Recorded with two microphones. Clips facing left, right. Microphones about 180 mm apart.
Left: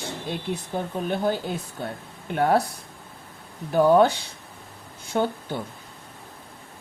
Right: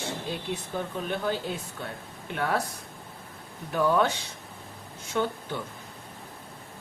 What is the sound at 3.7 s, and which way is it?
Speech, 35° left (ahead or behind).